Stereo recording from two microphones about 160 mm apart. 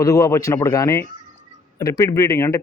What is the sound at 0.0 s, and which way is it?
A man's voice, 20° left (ahead or behind).